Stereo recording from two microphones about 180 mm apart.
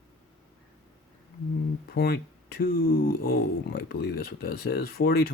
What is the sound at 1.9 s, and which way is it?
Speech, 60° left (ahead or behind).